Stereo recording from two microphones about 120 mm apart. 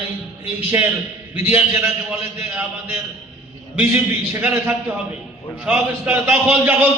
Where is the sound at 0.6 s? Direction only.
15° right (ahead or behind).